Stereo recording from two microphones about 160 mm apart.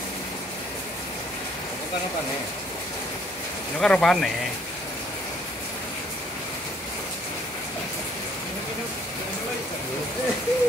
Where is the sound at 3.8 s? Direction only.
5° left (ahead or behind).